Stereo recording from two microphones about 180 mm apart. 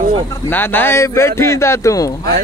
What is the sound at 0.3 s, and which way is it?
Speech, 10° left (ahead or behind).